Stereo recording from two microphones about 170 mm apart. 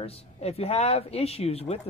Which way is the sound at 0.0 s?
35° left (ahead or behind).